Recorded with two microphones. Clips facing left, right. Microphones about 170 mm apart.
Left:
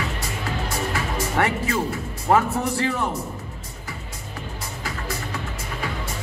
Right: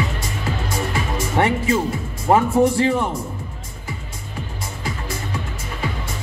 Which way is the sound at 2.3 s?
20° right (ahead or behind).